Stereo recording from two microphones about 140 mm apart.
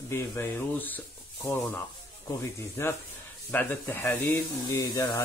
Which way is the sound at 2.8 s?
20° left (ahead or behind).